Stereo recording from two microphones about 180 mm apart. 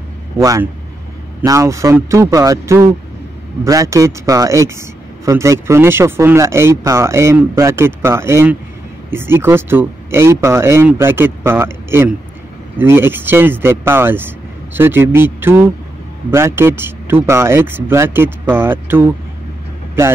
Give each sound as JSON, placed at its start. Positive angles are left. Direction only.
{"t": 0.4, "sound": "speech", "side_deg": -15}